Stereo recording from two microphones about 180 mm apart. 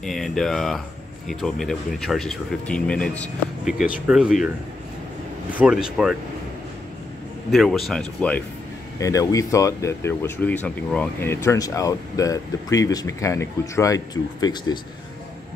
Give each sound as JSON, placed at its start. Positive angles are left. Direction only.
{"t": 0.0, "sound": "speech", "side_deg": 0}
{"t": 5.6, "sound": "speech", "side_deg": -5}
{"t": 7.5, "sound": "speech", "side_deg": 0}
{"t": 8.9, "sound": "speech", "side_deg": 20}